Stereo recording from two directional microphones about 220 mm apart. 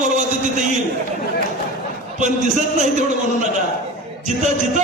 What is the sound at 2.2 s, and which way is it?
Speech, 35° right (ahead or behind).